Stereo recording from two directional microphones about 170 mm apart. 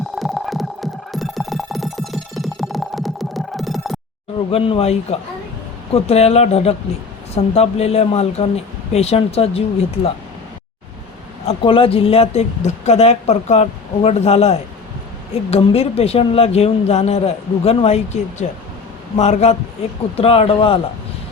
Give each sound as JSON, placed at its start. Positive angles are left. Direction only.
{"t": 0.2, "sound": "music", "side_deg": 0}
{"t": 4.5, "sound": "speech", "side_deg": 35}
{"t": 11.4, "sound": "speech", "side_deg": 30}